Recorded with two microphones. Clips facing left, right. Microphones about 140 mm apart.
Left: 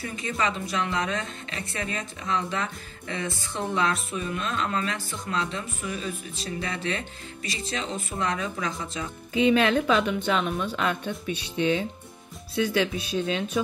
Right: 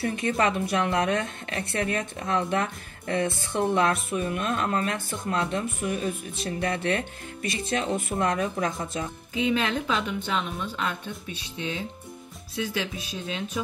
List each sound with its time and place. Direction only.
0.0 s a woman's voice: 60° right (ahead or behind)
9.3 s speech: 65° left (ahead or behind)